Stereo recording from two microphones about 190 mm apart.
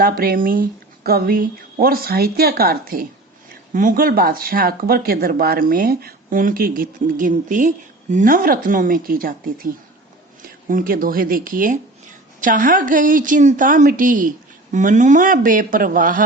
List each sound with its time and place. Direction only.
0.0 s speech: 50° right (ahead or behind)
10.7 s speech: 50° right (ahead or behind)